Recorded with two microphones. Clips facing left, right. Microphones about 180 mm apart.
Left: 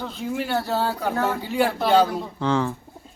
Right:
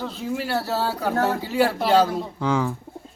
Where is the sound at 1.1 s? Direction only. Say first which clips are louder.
Right 5 dB; 40° right (ahead or behind).